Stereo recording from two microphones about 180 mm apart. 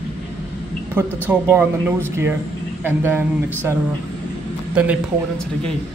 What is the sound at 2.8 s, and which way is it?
Speech, 10° right (ahead or behind).